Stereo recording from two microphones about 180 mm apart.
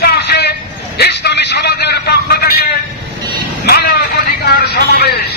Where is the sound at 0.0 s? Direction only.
65° left (ahead or behind).